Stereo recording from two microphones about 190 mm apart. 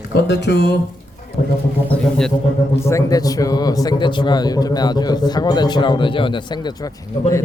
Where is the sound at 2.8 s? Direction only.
15° left (ahead or behind).